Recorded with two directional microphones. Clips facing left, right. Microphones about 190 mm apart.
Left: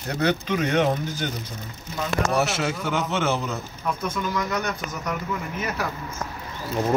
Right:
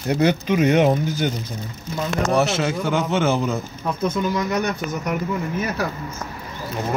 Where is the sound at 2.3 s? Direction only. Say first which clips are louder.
Right 4 dB; 5° left (ahead or behind).